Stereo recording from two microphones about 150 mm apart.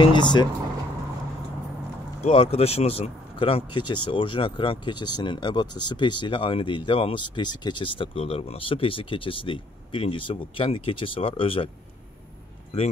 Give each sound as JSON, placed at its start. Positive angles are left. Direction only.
{"t": 0.0, "sound": "speech", "side_deg": 30}
{"t": 2.2, "sound": "speech", "side_deg": 40}